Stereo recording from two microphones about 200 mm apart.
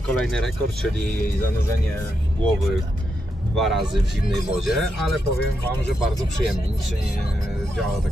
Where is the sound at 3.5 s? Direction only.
Centre (ahead or behind).